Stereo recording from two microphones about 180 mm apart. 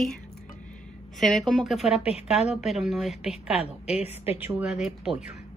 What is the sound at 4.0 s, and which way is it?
Speech, 35° left (ahead or behind).